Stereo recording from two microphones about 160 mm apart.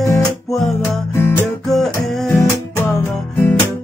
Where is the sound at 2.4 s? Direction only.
15° left (ahead or behind).